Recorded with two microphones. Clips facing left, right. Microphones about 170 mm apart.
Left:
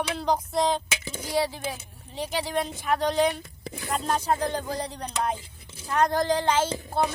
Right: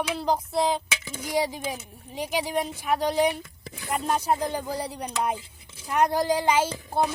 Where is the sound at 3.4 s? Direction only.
35° left (ahead or behind).